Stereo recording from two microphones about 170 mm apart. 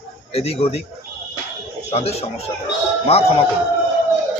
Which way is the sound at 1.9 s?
35° left (ahead or behind).